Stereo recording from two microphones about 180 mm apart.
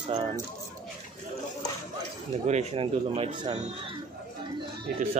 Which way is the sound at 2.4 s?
35° right (ahead or behind).